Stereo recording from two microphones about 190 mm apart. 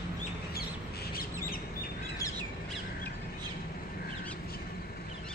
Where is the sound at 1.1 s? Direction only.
50° left (ahead or behind).